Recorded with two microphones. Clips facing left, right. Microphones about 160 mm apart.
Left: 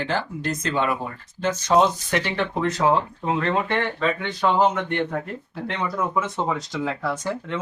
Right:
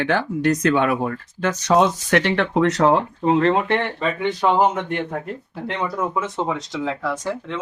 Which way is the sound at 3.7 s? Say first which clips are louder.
Right 2 dB; 15° right (ahead or behind).